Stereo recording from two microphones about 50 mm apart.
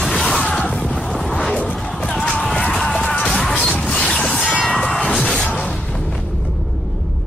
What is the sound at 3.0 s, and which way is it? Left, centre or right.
Music, centre.